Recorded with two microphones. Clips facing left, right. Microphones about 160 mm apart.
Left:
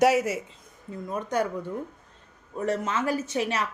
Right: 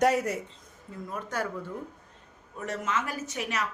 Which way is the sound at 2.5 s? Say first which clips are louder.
Left 4 dB; 30° left (ahead or behind).